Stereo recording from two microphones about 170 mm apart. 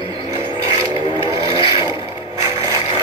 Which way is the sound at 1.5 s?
30° left (ahead or behind).